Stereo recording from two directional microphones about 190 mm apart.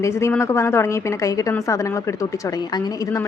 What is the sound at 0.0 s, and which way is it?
A woman's voice, 15° left (ahead or behind).